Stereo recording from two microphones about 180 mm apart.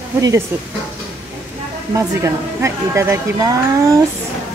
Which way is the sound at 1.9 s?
15° right (ahead or behind).